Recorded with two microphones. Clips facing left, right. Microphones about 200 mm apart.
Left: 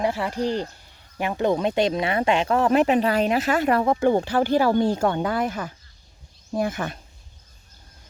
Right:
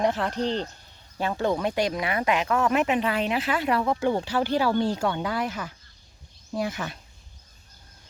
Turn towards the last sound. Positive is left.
turn(degrees=50)  # may be behind; listen again after turning